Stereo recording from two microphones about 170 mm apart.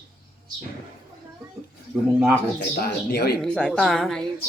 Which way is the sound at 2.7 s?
65° left (ahead or behind).